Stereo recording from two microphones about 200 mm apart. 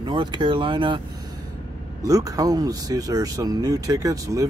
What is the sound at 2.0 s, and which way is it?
Speech, 15° right (ahead or behind).